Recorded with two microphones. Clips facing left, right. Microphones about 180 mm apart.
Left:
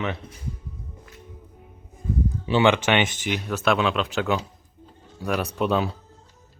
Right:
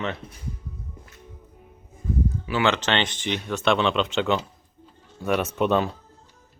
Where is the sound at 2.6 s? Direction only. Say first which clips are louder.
Left 3 dB; 10° left (ahead or behind).